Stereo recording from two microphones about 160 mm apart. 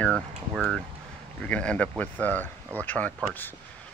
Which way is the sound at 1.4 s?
5° left (ahead or behind).